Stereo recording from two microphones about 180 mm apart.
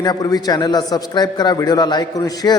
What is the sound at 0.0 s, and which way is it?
A man's voice, 20° left (ahead or behind).